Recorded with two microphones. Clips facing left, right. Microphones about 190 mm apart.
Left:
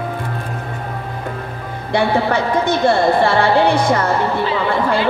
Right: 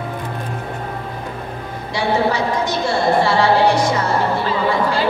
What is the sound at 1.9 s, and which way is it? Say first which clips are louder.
Music: left 2 dB; 55° left (ahead or behind).